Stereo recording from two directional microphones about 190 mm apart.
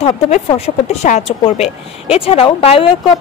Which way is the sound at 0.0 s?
30° left (ahead or behind).